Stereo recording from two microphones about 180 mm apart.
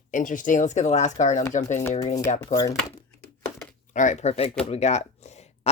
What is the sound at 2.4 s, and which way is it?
Speech, 20° left (ahead or behind).